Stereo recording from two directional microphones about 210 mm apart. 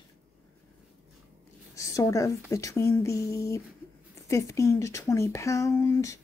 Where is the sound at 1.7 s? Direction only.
15° left (ahead or behind).